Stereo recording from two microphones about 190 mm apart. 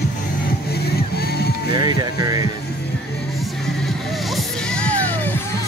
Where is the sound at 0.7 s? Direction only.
55° left (ahead or behind).